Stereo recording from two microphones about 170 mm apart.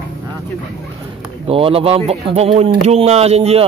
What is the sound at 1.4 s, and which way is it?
Speech, 35° right (ahead or behind).